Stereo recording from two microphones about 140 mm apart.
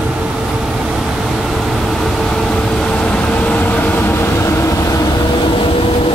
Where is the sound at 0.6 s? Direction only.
5° right (ahead or behind).